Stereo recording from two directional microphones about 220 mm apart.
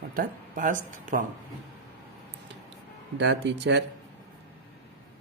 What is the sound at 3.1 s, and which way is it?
Speech, 55° right (ahead or behind).